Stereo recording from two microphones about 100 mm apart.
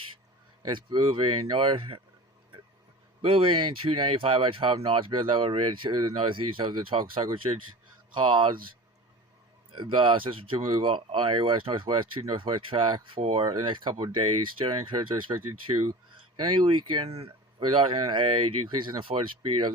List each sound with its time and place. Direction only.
0.7 s speech: 50° right (ahead or behind)
3.2 s speech: 65° right (ahead or behind)
9.7 s speech: 55° right (ahead or behind)
13.4 s speech: 45° right (ahead or behind)
13.9 s speech: 60° right (ahead or behind)
15.3 s speech: 45° right (ahead or behind)
16.6 s speech: 75° right (ahead or behind)
17.7 s speech: 60° right (ahead or behind)